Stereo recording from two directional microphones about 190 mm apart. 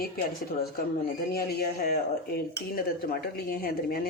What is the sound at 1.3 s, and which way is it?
Speech, 55° left (ahead or behind).